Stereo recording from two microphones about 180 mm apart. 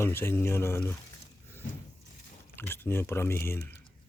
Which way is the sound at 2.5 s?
10° left (ahead or behind).